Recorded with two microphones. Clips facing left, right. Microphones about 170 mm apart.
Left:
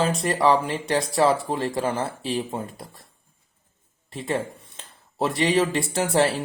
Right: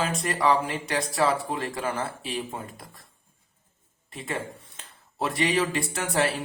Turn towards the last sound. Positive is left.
turn(degrees=30)  # may be behind; listen again after turning